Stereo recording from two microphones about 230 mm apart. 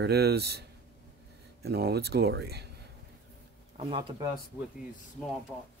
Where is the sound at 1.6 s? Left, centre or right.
Right.